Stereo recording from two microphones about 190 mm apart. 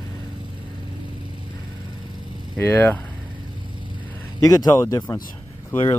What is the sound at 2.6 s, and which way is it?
Speech, 10° left (ahead or behind).